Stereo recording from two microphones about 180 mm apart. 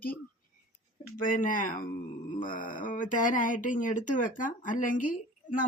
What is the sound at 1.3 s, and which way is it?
Speech, 50° left (ahead or behind).